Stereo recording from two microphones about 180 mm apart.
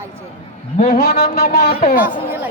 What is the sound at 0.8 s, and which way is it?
Speech, 55° left (ahead or behind).